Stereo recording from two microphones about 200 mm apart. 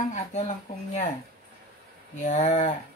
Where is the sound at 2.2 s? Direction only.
35° left (ahead or behind).